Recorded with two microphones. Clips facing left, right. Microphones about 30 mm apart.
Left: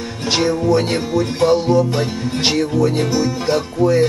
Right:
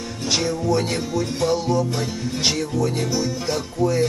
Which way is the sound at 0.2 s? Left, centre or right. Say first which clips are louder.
Left 6 dB; left.